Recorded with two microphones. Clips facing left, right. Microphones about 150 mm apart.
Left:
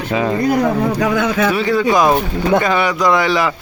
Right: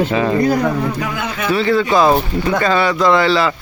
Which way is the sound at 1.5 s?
10° left (ahead or behind).